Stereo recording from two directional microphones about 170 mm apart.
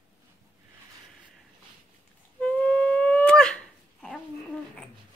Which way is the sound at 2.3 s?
5° left (ahead or behind).